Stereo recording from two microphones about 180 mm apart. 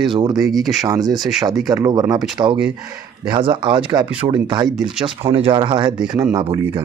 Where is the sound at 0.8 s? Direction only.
20° right (ahead or behind).